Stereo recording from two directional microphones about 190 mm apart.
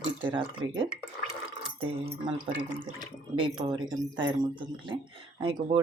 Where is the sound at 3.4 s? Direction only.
25° right (ahead or behind).